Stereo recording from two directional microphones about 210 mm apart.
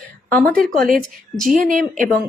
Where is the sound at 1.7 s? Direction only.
40° right (ahead or behind).